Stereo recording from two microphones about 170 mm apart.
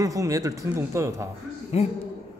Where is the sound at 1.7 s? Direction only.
40° left (ahead or behind).